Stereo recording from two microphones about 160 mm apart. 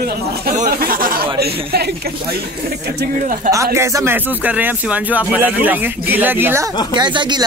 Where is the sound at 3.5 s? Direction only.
20° right (ahead or behind).